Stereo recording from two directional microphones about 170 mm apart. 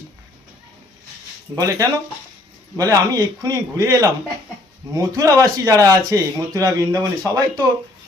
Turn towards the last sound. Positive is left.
turn(degrees=-20)  # may be behind; listen again after turning